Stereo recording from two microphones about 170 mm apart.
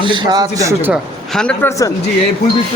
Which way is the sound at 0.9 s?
5° left (ahead or behind).